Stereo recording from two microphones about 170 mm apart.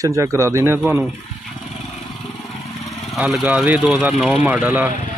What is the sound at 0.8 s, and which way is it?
Speech, centre (ahead or behind).